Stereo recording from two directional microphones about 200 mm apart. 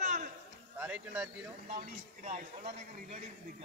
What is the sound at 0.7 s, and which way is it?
Speech, 5° right (ahead or behind).